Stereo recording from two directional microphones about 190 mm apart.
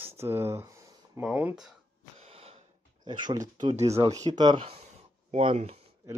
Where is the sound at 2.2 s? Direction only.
30° right (ahead or behind).